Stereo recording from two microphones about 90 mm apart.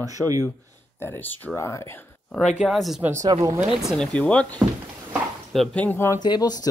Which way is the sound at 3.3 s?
40° right (ahead or behind).